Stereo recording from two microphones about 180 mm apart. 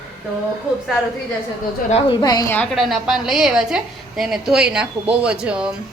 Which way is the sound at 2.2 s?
20° left (ahead or behind).